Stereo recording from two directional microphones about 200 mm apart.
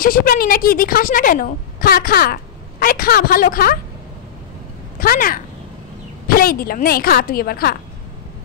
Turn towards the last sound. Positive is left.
turn(degrees=50)  # may be behind; listen again after turning